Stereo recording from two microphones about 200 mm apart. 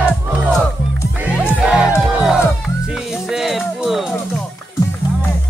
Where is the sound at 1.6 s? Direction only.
5° right (ahead or behind).